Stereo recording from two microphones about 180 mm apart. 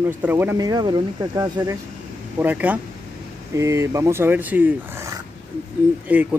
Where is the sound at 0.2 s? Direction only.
10° right (ahead or behind).